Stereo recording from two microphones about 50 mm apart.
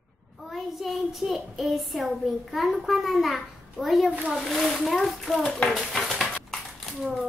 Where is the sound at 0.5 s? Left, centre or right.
Centre.